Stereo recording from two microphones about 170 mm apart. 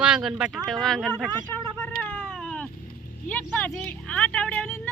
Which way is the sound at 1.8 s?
10° left (ahead or behind).